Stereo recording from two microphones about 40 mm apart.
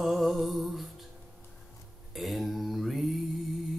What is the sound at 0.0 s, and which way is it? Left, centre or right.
Music, centre.